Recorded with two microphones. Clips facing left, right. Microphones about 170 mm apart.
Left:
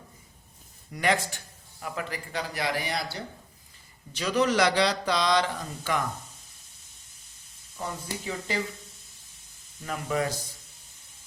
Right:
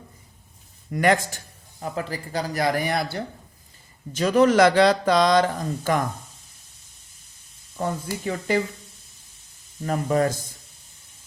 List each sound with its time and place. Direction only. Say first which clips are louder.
0.9 s speech: right 6 dB; 50° right (ahead or behind)
1.8 s speech: right 5 dB; 35° right (ahead or behind)
8.2 s speech: right 8 dB; 55° right (ahead or behind)
9.8 s speech: right 7 dB; 40° right (ahead or behind)